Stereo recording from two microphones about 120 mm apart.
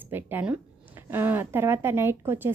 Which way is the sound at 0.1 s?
15° right (ahead or behind).